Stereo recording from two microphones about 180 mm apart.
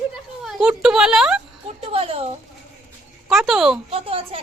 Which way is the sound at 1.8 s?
30° right (ahead or behind).